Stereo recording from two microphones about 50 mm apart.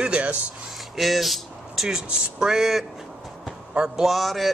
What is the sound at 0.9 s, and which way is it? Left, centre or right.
Speech, centre.